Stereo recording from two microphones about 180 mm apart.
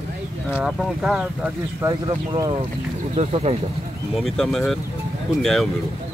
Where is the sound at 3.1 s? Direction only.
35° right (ahead or behind).